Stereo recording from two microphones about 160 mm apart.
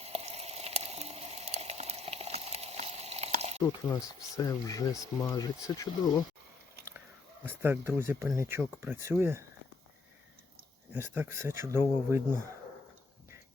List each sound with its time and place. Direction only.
0.0 s a sound: 40° right (ahead or behind)
3.6 s speech: 20° left (ahead or behind)
7.4 s speech: 15° right (ahead or behind)
10.9 s speech: 15° right (ahead or behind)